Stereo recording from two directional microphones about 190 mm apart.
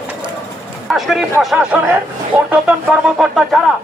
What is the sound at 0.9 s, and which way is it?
A man's voice, centre (ahead or behind).